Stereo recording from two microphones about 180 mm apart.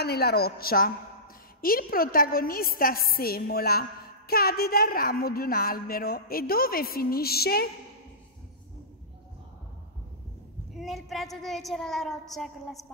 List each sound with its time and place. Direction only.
0.0 s a woman's voice: 60° left (ahead or behind)
10.7 s a woman's voice: centre (ahead or behind)